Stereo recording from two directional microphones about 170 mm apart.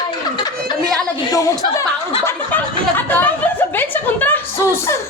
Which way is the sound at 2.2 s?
10° left (ahead or behind).